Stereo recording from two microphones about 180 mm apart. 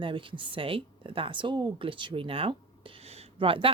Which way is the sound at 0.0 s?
30° right (ahead or behind).